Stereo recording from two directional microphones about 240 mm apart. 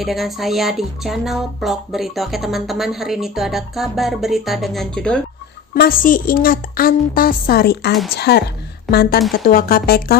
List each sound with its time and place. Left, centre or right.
0.0 s speech: centre
5.7 s a woman's voice: left